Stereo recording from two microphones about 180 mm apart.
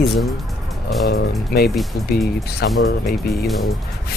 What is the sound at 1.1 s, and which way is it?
Speech, 60° left (ahead or behind).